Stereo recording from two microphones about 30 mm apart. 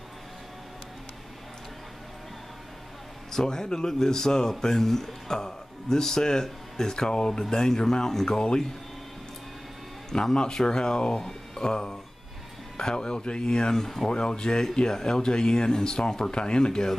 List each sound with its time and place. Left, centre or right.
3.3 s speech: centre
10.1 s speech: left
16.3 s speech: left